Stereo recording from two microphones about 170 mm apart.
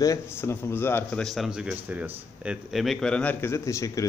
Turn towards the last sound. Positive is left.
turn(degrees=20)  # may be behind; listen again after turning